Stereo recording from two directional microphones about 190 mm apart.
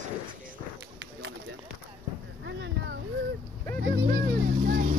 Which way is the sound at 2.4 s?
70° right (ahead or behind).